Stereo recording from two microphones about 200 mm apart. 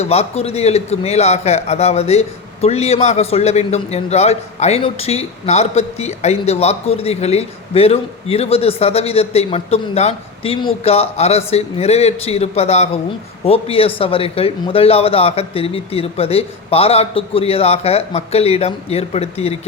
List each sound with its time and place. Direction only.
0.0 s a man's voice: 30° left (ahead or behind)